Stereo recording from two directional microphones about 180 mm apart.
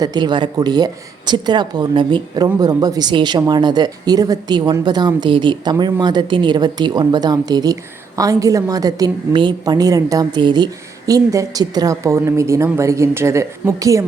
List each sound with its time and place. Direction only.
0.0 s speech: 25° right (ahead or behind)